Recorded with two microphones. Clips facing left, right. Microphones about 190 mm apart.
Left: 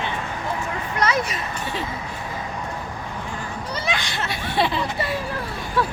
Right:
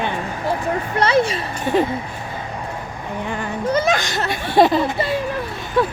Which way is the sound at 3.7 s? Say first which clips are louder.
Right 7 dB; 45° right (ahead or behind).